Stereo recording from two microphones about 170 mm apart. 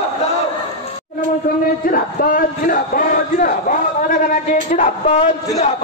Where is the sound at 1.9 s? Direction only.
55° left (ahead or behind).